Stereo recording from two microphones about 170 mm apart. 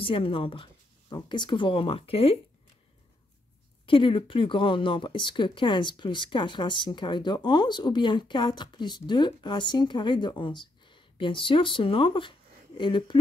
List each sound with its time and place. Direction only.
0.0 s speech: 30° left (ahead or behind)
3.8 s speech: 30° left (ahead or behind)